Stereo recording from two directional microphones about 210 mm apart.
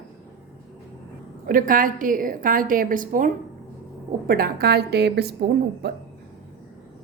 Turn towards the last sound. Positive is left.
turn(degrees=-50)  # may be behind; listen again after turning